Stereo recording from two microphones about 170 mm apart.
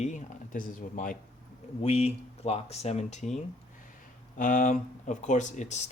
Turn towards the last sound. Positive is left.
turn(degrees=45)  # may be behind; listen again after turning